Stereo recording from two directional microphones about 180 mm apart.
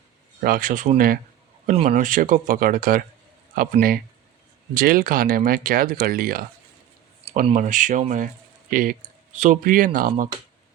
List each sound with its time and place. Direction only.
0.4 s speech: 50° right (ahead or behind)
7.5 s speech: 45° right (ahead or behind)